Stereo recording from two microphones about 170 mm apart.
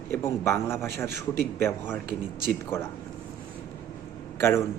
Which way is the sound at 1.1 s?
70° right (ahead or behind).